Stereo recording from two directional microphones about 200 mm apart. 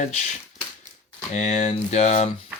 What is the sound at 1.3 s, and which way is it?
Speech, 35° left (ahead or behind).